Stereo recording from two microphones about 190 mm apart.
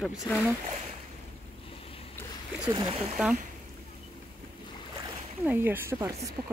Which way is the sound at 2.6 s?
25° right (ahead or behind).